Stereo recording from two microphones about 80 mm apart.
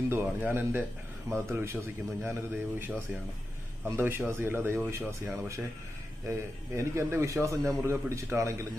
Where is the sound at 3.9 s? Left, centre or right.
Right.